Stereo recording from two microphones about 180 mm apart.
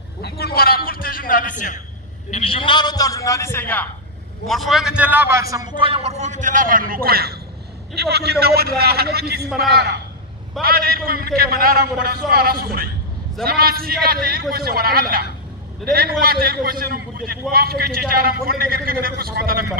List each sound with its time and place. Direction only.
0.2 s a man's voice: 60° left (ahead or behind)
2.3 s a man's voice: 30° left (ahead or behind); by 3.9 s 10° left (ahead or behind)
4.5 s a man's voice: centre (ahead or behind); by 9.5 s 60° right (ahead or behind)
10.6 s a man's voice: 55° right (ahead or behind)